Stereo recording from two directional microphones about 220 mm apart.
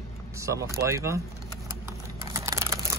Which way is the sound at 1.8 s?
10° right (ahead or behind).